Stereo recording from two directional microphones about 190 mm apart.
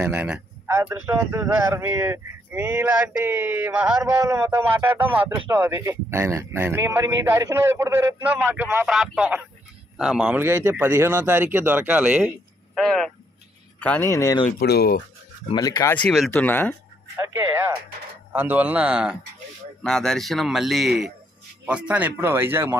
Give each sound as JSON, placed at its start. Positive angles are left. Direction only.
{"t": 0.0, "sound": "a man's voice", "side_deg": -10}
{"t": 14.6, "sound": "speech", "side_deg": 55}
{"t": 15.5, "sound": "speech", "side_deg": 20}
{"t": 18.3, "sound": "a man's voice", "side_deg": -10}